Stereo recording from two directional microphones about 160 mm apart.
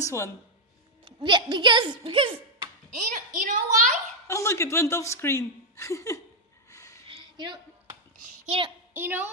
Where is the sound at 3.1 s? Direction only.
55° right (ahead or behind).